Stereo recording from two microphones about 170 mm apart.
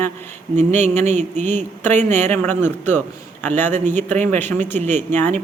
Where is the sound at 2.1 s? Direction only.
10° left (ahead or behind).